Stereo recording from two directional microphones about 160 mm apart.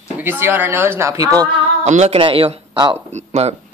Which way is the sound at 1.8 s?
45° right (ahead or behind).